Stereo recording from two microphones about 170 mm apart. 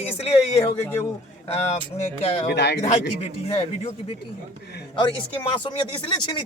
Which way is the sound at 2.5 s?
85° left.